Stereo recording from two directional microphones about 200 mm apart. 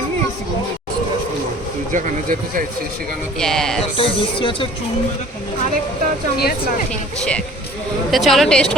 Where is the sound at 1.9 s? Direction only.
45° right (ahead or behind).